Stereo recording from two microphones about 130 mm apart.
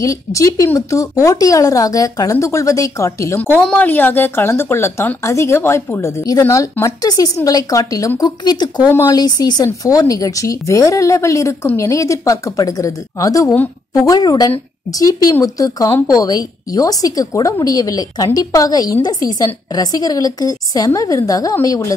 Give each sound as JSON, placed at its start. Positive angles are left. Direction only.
{"t": 0.0, "sound": "speech", "side_deg": 25}
{"t": 3.3, "sound": "speech", "side_deg": 10}